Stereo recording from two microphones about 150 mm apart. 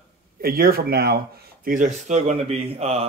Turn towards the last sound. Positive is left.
turn(degrees=-45)  # may be behind; listen again after turning